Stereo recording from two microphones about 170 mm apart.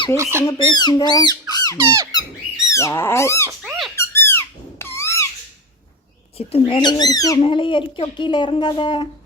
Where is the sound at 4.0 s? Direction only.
15° left (ahead or behind).